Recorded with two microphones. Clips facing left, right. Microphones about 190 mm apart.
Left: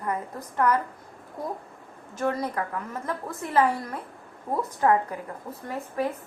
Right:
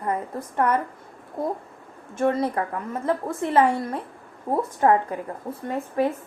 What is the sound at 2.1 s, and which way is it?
A woman's voice, 25° right (ahead or behind).